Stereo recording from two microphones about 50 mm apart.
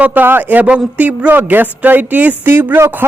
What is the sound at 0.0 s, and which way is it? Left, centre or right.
Speech, right.